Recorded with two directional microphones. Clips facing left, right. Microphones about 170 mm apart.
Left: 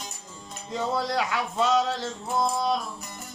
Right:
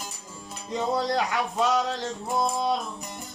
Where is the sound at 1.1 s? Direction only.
20° right (ahead or behind).